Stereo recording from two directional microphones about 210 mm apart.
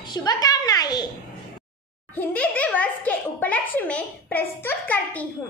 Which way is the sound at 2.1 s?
5° left (ahead or behind).